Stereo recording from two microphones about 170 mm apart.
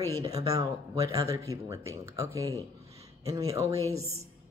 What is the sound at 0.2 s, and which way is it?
Speech, 20° right (ahead or behind).